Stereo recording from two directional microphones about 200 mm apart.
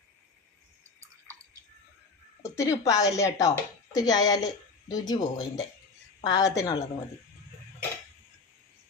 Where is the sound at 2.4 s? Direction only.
15° left (ahead or behind).